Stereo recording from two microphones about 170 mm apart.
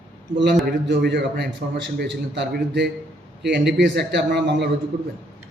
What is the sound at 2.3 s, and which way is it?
Speech, 80° right.